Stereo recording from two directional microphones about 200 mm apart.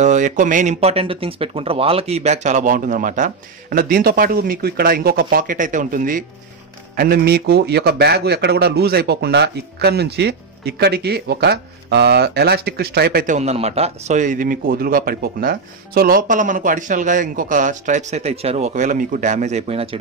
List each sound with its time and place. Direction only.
0.0 s a man's voice: 40° right (ahead or behind)